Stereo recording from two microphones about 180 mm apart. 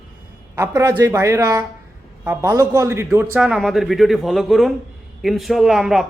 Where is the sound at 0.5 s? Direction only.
15° right (ahead or behind).